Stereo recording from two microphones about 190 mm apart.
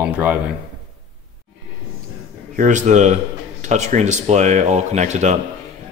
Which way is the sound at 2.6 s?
40° right (ahead or behind).